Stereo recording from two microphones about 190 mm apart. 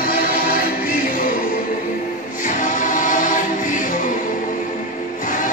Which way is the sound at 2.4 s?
40° left (ahead or behind).